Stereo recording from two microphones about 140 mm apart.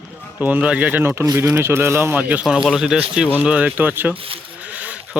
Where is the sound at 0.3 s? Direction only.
10° right (ahead or behind).